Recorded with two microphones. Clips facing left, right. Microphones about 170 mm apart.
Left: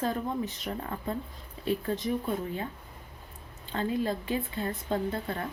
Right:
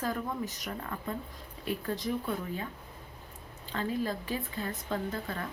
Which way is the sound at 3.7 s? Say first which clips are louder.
Left 3 dB; 30° left (ahead or behind).